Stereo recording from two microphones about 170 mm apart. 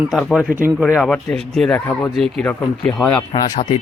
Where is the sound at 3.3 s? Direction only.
25° left (ahead or behind).